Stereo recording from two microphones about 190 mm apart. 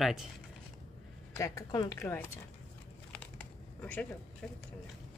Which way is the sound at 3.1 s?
5° left (ahead or behind).